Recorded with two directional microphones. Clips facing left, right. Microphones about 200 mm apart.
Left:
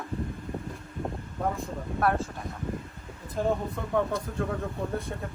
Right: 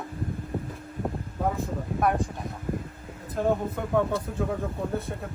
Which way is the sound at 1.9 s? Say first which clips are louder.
Right 1 dB; 15° right (ahead or behind).